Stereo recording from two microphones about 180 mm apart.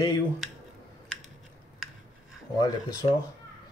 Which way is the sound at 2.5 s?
20° left (ahead or behind).